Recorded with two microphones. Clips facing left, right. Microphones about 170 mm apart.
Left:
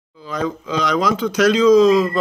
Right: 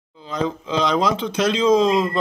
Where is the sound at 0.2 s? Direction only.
25° right (ahead or behind).